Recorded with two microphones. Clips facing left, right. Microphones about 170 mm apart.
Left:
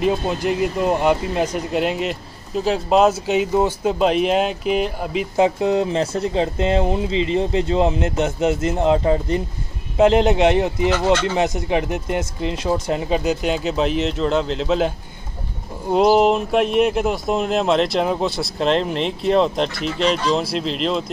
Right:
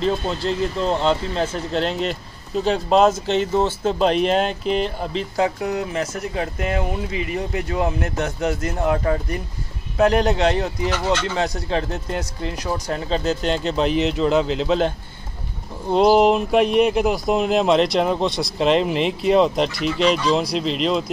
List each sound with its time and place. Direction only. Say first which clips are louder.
0.0 s speech: left 2 dB; 15° left (ahead or behind)
5.3 s speech: left 6 dB; 25° left (ahead or behind); by 21.0 s centre (ahead or behind)